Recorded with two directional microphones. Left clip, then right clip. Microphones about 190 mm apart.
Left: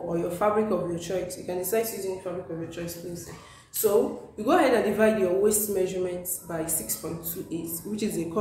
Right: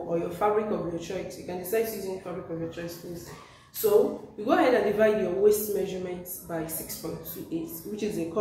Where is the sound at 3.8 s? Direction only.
45° left (ahead or behind).